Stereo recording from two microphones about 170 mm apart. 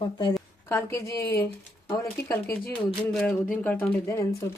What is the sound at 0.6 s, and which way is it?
Speech, 15° left (ahead or behind).